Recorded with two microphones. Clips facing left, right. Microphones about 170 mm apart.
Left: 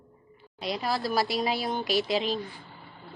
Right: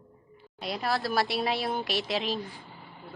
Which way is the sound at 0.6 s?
Centre (ahead or behind).